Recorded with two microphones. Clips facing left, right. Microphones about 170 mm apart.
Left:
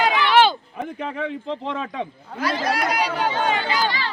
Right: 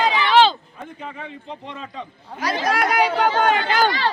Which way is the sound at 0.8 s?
90° left.